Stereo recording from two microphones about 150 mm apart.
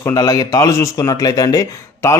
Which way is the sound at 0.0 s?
25° left (ahead or behind).